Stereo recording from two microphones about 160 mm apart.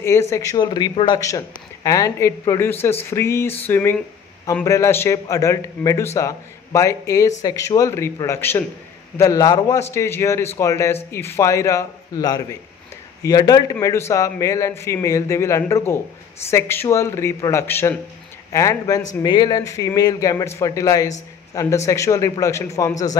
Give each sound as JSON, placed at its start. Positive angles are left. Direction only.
{"t": 0.0, "sound": "a man's voice", "side_deg": 15}